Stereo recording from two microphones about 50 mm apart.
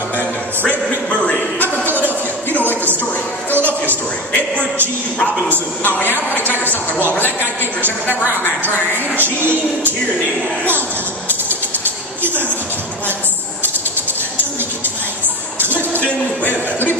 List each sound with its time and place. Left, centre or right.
0.7 s a sound: left
1.9 s a sound: right
6.0 s a woman's voice: left
8.1 s a woman's voice: left
9.1 s music: right
15.6 s music: right
16.0 s speech: left